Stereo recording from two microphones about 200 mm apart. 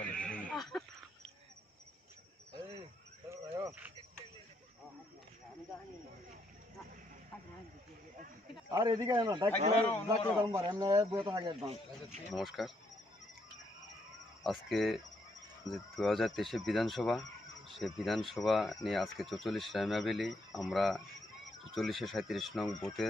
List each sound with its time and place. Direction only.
0.0 s a sound: 5° left (ahead or behind)
3.2 s a sound: 15° right (ahead or behind)
8.7 s a man's voice: 20° right (ahead or behind)
9.8 s a man's voice: 10° left (ahead or behind)
10.6 s a man's voice: 20° right (ahead or behind)
12.3 s speech: centre (ahead or behind)
14.4 s speech: centre (ahead or behind)